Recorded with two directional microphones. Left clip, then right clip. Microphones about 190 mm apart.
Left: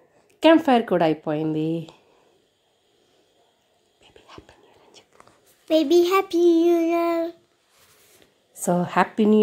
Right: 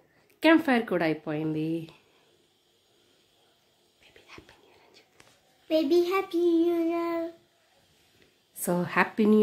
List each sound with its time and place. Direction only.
0.4 s speech: 25° left (ahead or behind)
5.7 s child singing: 45° left (ahead or behind)
8.6 s a woman's voice: 15° left (ahead or behind)